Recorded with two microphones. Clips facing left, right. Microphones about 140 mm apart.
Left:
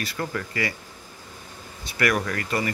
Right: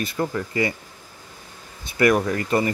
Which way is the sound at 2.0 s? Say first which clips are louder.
Right 6 dB; 25° right (ahead or behind).